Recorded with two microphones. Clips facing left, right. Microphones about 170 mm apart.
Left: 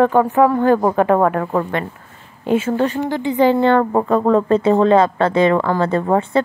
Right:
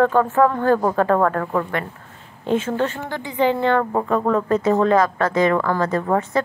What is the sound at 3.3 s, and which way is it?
A woman's voice, 35° left (ahead or behind).